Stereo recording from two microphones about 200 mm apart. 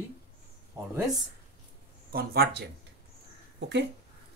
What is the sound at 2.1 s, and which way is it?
Speech, 50° right (ahead or behind).